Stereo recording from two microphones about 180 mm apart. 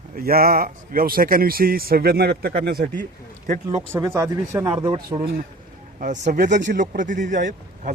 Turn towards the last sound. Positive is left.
turn(degrees=-45)  # may be behind; listen again after turning